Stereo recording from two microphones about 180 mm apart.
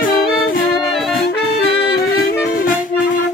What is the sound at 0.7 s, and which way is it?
Music, centre (ahead or behind).